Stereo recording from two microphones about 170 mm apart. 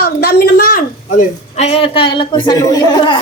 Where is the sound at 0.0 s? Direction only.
65° left (ahead or behind).